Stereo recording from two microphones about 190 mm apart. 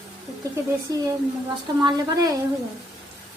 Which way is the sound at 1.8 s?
15° right (ahead or behind).